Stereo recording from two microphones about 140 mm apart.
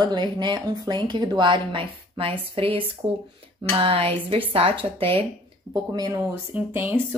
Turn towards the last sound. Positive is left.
turn(degrees=-15)  # may be behind; listen again after turning